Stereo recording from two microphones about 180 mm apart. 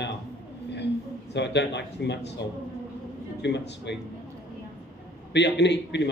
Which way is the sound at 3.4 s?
75° left (ahead or behind).